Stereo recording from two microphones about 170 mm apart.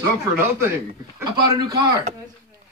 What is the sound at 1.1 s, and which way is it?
Speech, 25° right (ahead or behind).